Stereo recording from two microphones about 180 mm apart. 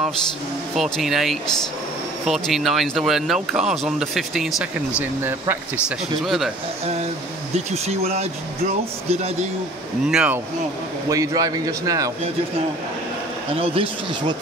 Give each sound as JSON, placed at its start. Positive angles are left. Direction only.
{"t": 0.7, "sound": "speech", "side_deg": 0}
{"t": 6.2, "sound": "speech", "side_deg": 0}
{"t": 7.5, "sound": "speech", "side_deg": -35}
{"t": 10.0, "sound": "speech", "side_deg": -5}
{"t": 11.1, "sound": "a man's voice", "side_deg": -20}
{"t": 13.6, "sound": "speech", "side_deg": -30}